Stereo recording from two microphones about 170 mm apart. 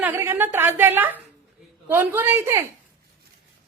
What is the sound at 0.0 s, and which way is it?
A woman's voice, 15° right (ahead or behind).